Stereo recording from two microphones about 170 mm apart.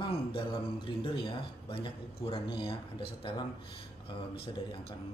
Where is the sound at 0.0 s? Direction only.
30° left (ahead or behind).